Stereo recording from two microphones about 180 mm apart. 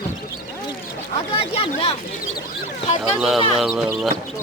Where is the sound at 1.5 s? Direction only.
30° left (ahead or behind).